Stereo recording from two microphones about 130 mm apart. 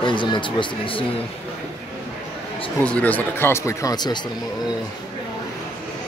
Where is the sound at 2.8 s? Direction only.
10° left (ahead or behind); by 4.2 s 35° left (ahead or behind).